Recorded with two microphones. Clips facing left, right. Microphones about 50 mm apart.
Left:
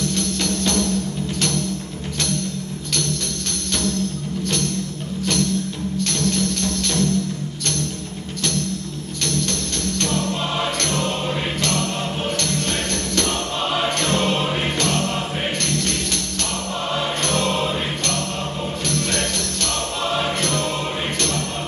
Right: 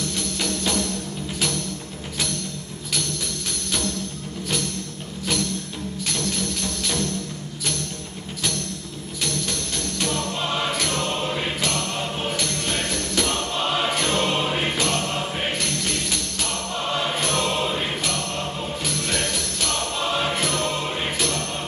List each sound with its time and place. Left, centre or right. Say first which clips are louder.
0.1 s music: left 4 dB; centre
5.9 s music: left 6 dB; centre
9.2 s music: left 4 dB; centre
18.9 s jingle bell: left 3 dB; centre